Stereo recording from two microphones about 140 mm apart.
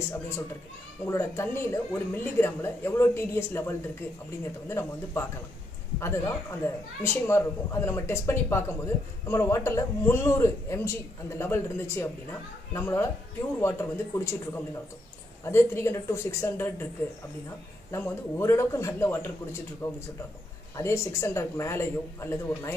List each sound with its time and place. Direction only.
1.0 s a man's voice: 20° left (ahead or behind)
17.9 s a man's voice: 20° left (ahead or behind)